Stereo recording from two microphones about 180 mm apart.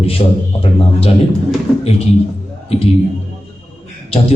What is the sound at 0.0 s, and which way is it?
A man's voice, 30° left (ahead or behind).